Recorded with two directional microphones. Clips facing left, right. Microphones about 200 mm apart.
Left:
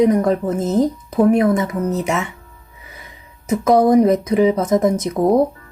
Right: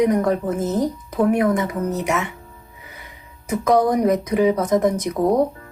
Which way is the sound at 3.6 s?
30° left (ahead or behind).